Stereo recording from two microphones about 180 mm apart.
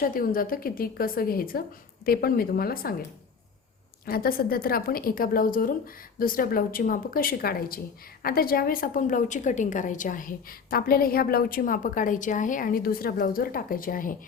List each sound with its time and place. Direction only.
0.0 s a woman's voice: 50° left (ahead or behind)
4.0 s a woman's voice: 55° left (ahead or behind)